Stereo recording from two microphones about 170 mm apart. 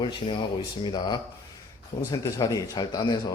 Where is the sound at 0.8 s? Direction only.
25° left (ahead or behind).